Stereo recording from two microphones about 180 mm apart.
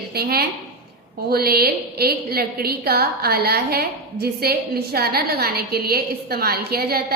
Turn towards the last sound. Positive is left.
turn(degrees=-60)  # may be behind; listen again after turning